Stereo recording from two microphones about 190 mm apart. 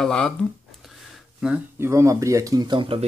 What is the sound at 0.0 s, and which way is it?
Speech, 5° left (ahead or behind).